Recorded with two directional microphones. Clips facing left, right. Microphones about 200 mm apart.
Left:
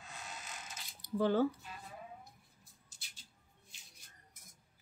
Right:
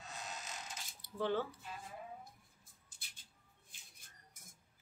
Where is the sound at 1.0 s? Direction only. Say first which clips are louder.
Left 6 dB; 40° left (ahead or behind).